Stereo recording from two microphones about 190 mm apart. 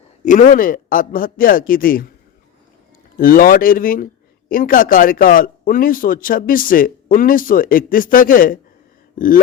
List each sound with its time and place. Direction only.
0.3 s a man's voice: 45° left (ahead or behind)
3.2 s a man's voice: 50° left (ahead or behind)
9.1 s a sound: 45° left (ahead or behind)